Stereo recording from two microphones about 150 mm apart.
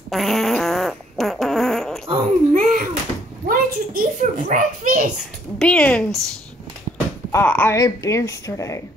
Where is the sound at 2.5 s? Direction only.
60° right (ahead or behind).